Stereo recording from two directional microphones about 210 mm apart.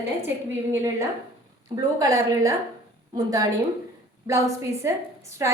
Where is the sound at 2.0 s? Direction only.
15° right (ahead or behind).